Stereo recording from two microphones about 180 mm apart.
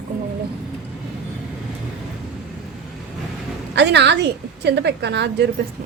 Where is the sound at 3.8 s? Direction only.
70° right (ahead or behind).